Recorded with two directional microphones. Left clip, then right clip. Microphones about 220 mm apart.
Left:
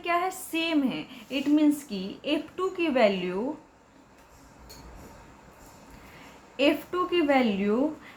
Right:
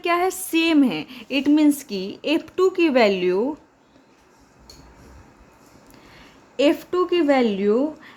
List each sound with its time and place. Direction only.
0.0 s speech: 50° right (ahead or behind)
6.6 s a woman's voice: 40° right (ahead or behind)